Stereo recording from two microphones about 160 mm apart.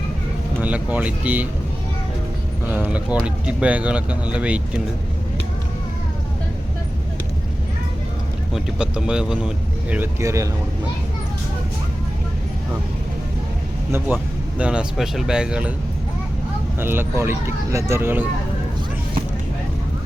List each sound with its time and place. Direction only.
0.6 s speech: 10° right (ahead or behind)
2.6 s speech: 10° right (ahead or behind)
8.5 s speech: 5° right (ahead or behind)
14.1 s speech: 10° right (ahead or behind)
16.8 s speech: 15° right (ahead or behind)